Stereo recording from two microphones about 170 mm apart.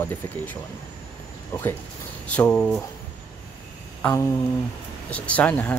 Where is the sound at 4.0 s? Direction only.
10° left (ahead or behind).